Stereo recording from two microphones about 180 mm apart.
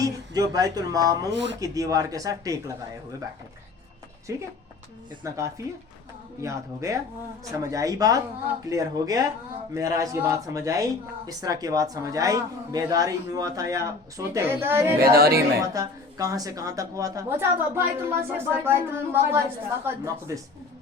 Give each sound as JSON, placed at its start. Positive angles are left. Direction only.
{"t": 0.0, "sound": "speech", "side_deg": -20}
{"t": 1.3, "sound": "speech", "side_deg": -85}
{"t": 1.5, "sound": "speech", "side_deg": -20}
{"t": 4.3, "sound": "a woman's voice", "side_deg": -15}
{"t": 15.0, "sound": "speech", "side_deg": -60}
{"t": 15.4, "sound": "a woman's voice", "side_deg": -20}